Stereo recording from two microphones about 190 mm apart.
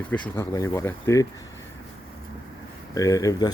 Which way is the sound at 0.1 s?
15° left (ahead or behind).